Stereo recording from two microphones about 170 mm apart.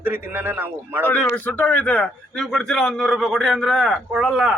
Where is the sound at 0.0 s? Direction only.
10° right (ahead or behind).